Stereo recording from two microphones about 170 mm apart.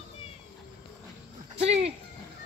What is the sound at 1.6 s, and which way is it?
Speech, 40° right (ahead or behind).